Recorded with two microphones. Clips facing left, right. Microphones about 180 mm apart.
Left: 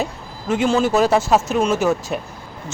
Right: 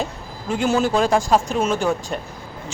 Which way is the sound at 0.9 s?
5° left (ahead or behind).